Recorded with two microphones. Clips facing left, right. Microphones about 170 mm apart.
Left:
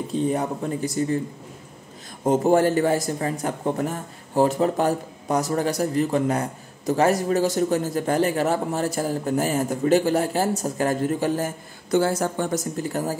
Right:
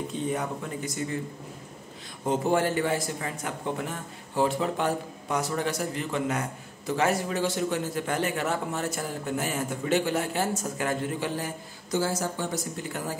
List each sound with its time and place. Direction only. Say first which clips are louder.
0.1 s a man's voice: left 10 dB; 35° left (ahead or behind)
2.2 s a man's voice: left 7 dB; 45° left (ahead or behind)
11.9 s speech: left 7 dB; 60° left (ahead or behind); by 13.2 s 40° left (ahead or behind)